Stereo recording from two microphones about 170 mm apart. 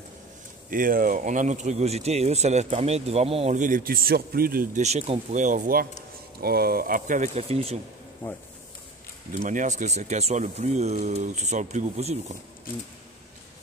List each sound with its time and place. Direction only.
0.7 s speech: 55° right (ahead or behind)
4.8 s speech: 40° right (ahead or behind)
6.4 s speech: 65° right (ahead or behind); by 7.8 s 40° right (ahead or behind)
8.2 s speech: 10° left (ahead or behind)
9.3 s speech: 50° right (ahead or behind)